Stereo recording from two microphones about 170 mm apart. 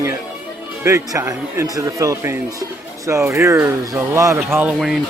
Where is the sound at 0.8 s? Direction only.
15° right (ahead or behind).